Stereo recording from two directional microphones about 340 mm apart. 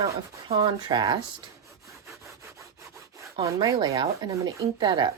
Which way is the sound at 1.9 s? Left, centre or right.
Centre.